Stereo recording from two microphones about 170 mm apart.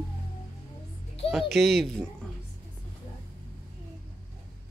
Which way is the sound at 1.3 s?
Centre (ahead or behind).